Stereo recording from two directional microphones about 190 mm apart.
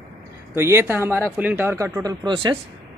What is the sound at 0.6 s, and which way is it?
Speech, 15° right (ahead or behind).